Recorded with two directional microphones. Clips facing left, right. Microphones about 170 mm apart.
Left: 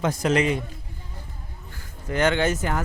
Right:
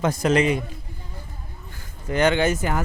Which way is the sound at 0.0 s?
40° right (ahead or behind).